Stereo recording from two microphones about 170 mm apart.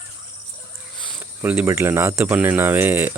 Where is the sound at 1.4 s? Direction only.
10° right (ahead or behind).